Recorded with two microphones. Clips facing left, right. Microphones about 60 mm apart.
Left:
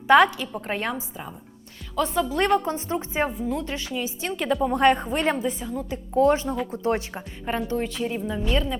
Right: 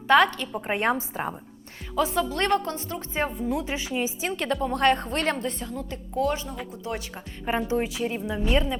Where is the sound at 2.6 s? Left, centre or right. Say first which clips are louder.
Left 5 dB; left.